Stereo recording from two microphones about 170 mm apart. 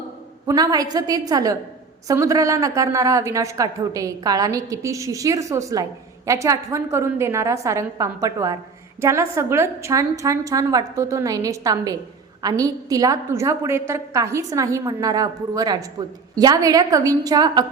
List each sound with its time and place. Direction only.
0.4 s a woman's voice: 25° right (ahead or behind)